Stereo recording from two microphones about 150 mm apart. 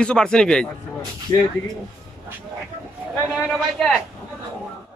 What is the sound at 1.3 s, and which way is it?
Speech, 25° left (ahead or behind).